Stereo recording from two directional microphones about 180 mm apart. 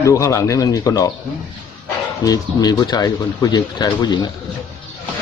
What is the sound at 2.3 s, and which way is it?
Speech, 20° left (ahead or behind).